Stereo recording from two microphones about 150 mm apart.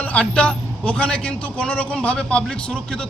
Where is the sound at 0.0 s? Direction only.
10° left (ahead or behind).